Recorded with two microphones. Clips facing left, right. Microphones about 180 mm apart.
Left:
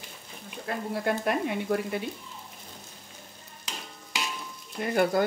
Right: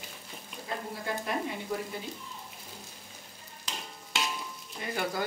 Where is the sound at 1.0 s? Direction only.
65° left (ahead or behind).